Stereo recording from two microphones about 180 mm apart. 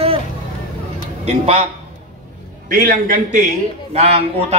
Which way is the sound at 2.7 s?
50° right (ahead or behind).